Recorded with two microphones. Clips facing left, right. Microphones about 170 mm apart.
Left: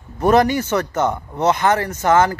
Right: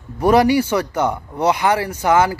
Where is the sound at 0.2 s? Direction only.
10° right (ahead or behind).